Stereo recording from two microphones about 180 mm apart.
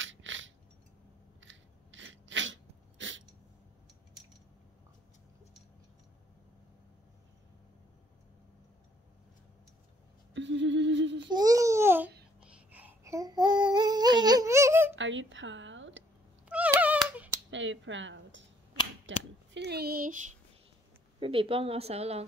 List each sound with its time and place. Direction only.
0.0 s a sound: 90° right
1.4 s sneeze: 90° right
10.3 s a sound: 90° right
11.1 s babbling: 25° right (ahead or behind)
12.4 s a sound: 5° right (ahead or behind)
15.0 s speech: 90° right
16.4 s cat: 5° right (ahead or behind)
17.5 s speech: 90° right; by 20.3 s 45° right (ahead or behind)
21.2 s a woman's voice: 30° right (ahead or behind)